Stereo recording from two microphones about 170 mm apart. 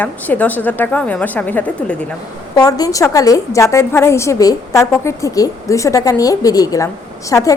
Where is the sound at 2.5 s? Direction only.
20° left (ahead or behind).